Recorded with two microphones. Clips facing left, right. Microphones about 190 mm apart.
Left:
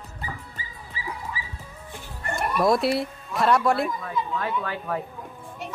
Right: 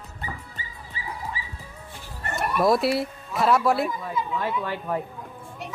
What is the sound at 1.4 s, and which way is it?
Music, 25° right (ahead or behind).